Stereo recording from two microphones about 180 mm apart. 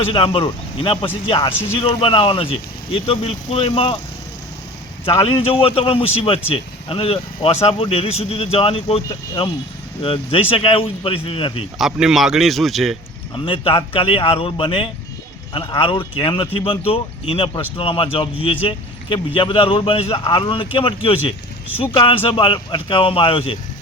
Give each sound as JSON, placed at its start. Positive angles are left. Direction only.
{"t": 0.1, "sound": "speech", "side_deg": 30}
{"t": 5.0, "sound": "speech", "side_deg": 30}
{"t": 11.8, "sound": "speech", "side_deg": -5}
{"t": 13.3, "sound": "speech", "side_deg": 30}